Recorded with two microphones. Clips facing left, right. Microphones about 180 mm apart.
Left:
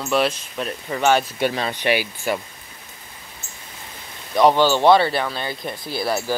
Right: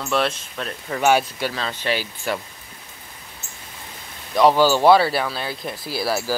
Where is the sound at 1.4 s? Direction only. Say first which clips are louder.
Left 4 dB; 20° left (ahead or behind).